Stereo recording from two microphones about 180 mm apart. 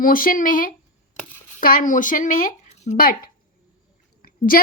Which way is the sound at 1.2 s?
40° left (ahead or behind).